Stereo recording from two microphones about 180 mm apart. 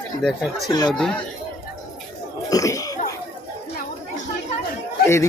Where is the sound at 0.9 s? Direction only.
5° left (ahead or behind).